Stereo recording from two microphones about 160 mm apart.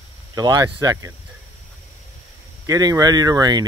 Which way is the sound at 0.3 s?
25° right (ahead or behind).